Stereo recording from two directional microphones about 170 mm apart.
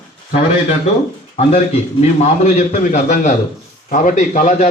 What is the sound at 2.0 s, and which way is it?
A man's voice, 40° left (ahead or behind).